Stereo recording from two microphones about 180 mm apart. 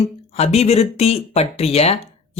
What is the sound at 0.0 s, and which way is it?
Speech, 35° left (ahead or behind).